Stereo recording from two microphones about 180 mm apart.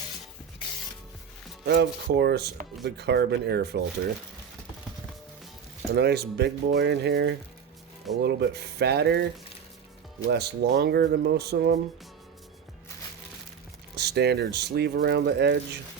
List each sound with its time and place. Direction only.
1.6 s speech: 70° right (ahead or behind)
5.9 s speech: 65° right (ahead or behind)
10.2 s speech: 70° right (ahead or behind)
13.9 s speech: 65° right (ahead or behind)